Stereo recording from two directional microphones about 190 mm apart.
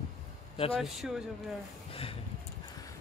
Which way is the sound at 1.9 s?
30° left (ahead or behind).